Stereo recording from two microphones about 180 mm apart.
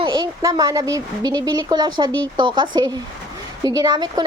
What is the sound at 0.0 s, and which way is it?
A child's voice, 25° right (ahead or behind).